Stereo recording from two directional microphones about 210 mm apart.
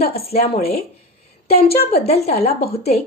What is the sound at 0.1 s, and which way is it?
Speech, 30° left (ahead or behind).